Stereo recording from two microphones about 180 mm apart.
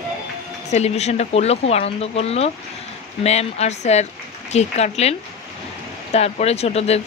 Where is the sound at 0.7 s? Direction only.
35° left (ahead or behind).